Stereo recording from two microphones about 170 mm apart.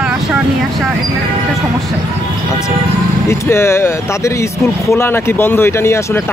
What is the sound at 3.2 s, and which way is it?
Speech, 15° left (ahead or behind).